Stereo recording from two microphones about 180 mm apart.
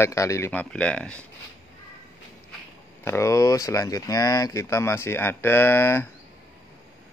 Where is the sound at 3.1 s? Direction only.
15° left (ahead or behind).